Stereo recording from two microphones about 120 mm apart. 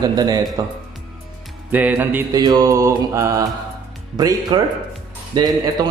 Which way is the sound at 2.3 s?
35° right (ahead or behind).